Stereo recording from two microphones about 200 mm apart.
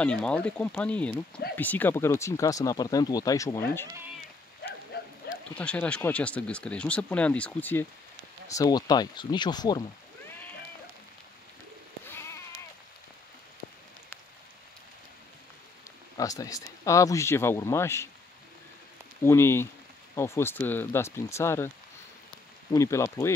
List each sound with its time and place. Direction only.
0.0 s speech: 5° left (ahead or behind)
5.2 s a sound: 50° left (ahead or behind)
5.6 s speech: 5° left (ahead or behind)
8.5 s speech: 20° left (ahead or behind)
12.1 s bleat: 15° left (ahead or behind)
16.2 s speech: 15° left (ahead or behind)
19.2 s speech: 10° left (ahead or behind)
22.7 s speech: 15° left (ahead or behind)